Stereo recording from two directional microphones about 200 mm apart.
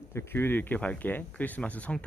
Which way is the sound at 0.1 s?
10° left (ahead or behind).